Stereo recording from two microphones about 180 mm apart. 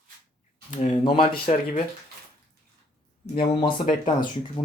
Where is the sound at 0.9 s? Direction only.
25° left (ahead or behind).